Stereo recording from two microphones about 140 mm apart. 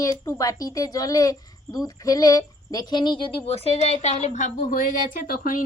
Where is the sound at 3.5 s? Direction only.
45° left (ahead or behind); by 5.6 s 90° left.